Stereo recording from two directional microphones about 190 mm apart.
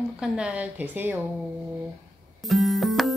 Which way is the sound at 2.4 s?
Centre (ahead or behind).